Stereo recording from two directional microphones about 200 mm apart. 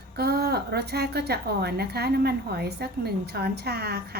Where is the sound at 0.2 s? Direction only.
50° right (ahead or behind).